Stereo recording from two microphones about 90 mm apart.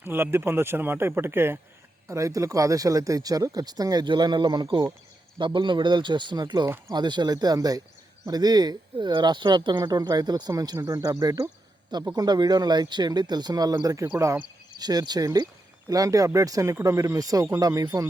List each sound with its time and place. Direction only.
0.0 s speech: 25° right (ahead or behind); by 4.0 s 45° right (ahead or behind)
4.0 s speech: 55° right (ahead or behind); by 14.3 s 35° right (ahead or behind)
14.8 s speech: 50° right (ahead or behind)